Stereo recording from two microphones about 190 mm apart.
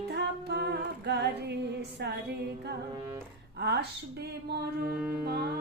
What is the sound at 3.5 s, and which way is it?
Speech, 60° right (ahead or behind).